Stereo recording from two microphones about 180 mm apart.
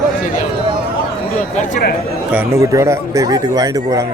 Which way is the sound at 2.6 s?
15° right (ahead or behind).